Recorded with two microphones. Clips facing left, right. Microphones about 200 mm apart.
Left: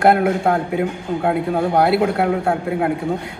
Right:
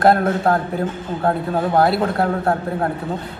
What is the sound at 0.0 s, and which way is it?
A man's voice, 10° left (ahead or behind).